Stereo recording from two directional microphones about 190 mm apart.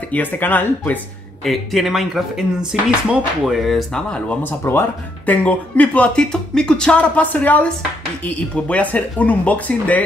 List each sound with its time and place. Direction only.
0.1 s speech: 10° left (ahead or behind)